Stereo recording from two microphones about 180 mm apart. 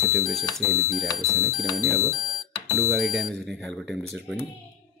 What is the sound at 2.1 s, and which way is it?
Alarm clock, 20° right (ahead or behind).